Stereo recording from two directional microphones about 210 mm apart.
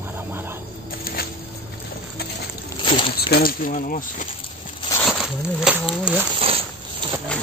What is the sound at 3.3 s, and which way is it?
Speech, 45° left (ahead or behind).